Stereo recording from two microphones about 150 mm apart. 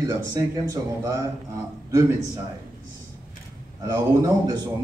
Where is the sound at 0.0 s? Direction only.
25° right (ahead or behind).